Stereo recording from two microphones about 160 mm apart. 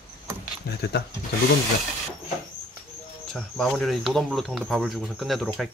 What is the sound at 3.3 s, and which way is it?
Speech, 5° left (ahead or behind).